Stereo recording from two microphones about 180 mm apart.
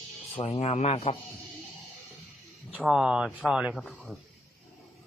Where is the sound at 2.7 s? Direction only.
5° right (ahead or behind).